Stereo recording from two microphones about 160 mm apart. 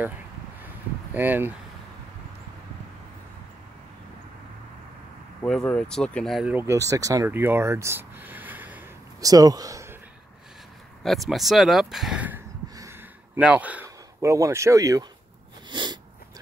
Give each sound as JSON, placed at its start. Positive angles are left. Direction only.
{"t": 1.1, "sound": "speech", "side_deg": -10}
{"t": 5.4, "sound": "speech", "side_deg": 5}
{"t": 6.5, "sound": "speech", "side_deg": -15}
{"t": 9.2, "sound": "speech", "side_deg": -20}
{"t": 11.0, "sound": "speech", "side_deg": 0}
{"t": 12.6, "sound": "a sound", "side_deg": -20}
{"t": 13.4, "sound": "speech", "side_deg": -10}
{"t": 15.7, "sound": "sneeze", "side_deg": -30}